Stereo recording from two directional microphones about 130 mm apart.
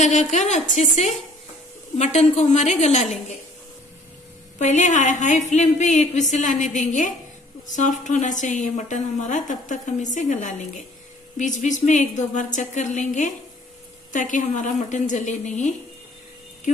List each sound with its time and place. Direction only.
0.0 s a woman's voice: 60° left (ahead or behind)
2.0 s a woman's voice: 60° left (ahead or behind)
4.6 s a woman's voice: 65° left (ahead or behind)